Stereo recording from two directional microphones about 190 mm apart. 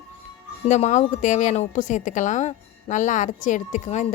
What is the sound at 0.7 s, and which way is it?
Speech, 40° left (ahead or behind).